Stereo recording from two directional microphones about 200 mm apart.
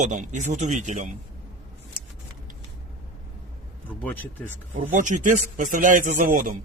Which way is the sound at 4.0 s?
10° left (ahead or behind).